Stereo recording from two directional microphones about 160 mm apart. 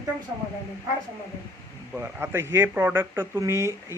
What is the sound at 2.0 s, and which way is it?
Speech, 15° right (ahead or behind).